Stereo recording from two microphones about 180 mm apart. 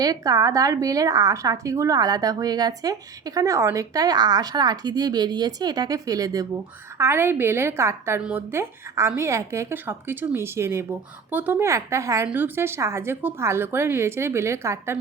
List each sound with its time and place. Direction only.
0.0 s a woman's voice: 20° right (ahead or behind)